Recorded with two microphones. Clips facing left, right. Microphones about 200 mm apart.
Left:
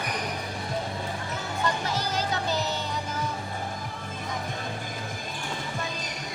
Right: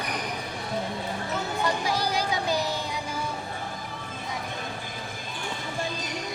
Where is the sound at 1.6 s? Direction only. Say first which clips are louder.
Right 1 dB; 10° right (ahead or behind).